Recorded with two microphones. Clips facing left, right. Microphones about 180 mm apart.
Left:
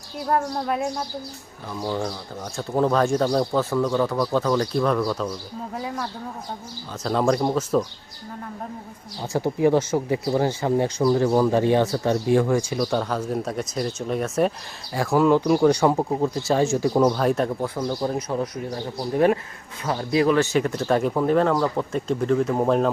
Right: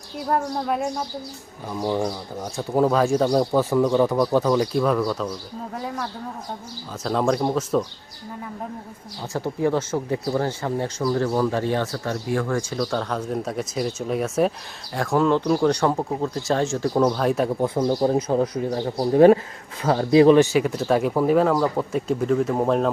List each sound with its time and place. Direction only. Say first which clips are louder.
0.3 s speech: even; centre (ahead or behind)
1.8 s speech: right 3 dB; 15° right (ahead or behind); by 7.9 s centre (ahead or behind)
9.3 s speech: left 3 dB; 10° left (ahead or behind)
17.2 s speech: even; centre (ahead or behind)
18.0 s speech: right 5 dB; 30° right (ahead or behind)
20.4 s speech: right 2 dB; 10° right (ahead or behind)